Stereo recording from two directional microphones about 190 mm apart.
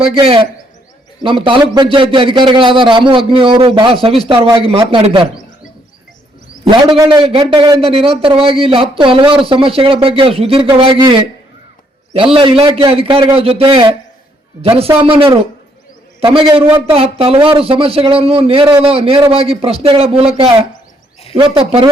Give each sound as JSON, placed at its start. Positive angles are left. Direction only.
{"t": 0.0, "sound": "a man's voice", "side_deg": -30}
{"t": 6.7, "sound": "a man's voice", "side_deg": -20}